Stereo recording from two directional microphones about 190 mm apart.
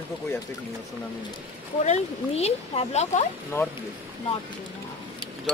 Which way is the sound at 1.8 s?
35° left (ahead or behind).